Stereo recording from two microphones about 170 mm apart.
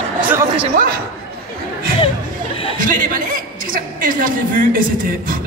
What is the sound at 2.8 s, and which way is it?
Chuckle, 55° right (ahead or behind).